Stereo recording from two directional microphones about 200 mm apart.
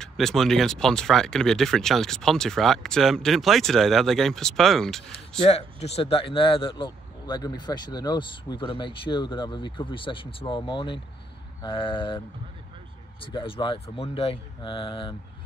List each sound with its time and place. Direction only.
0.0 s speech: centre (ahead or behind)
5.4 s a man's voice: 30° left (ahead or behind)
13.2 s a man's voice: 25° left (ahead or behind)